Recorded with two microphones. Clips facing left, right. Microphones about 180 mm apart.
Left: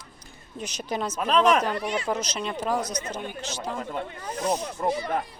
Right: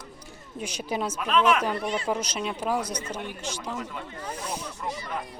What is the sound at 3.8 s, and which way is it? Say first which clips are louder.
Speech: left 3 dB; 45° left (ahead or behind).